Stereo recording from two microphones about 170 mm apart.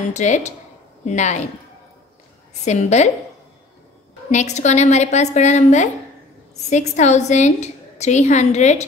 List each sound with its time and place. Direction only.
0.1 s a woman's voice: 45° left (ahead or behind)
2.6 s a woman's voice: 40° left (ahead or behind)
4.3 s a woman's voice: 45° left (ahead or behind)